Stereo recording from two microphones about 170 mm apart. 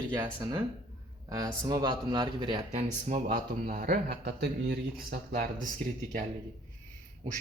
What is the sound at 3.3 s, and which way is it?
Speech, 55° right (ahead or behind).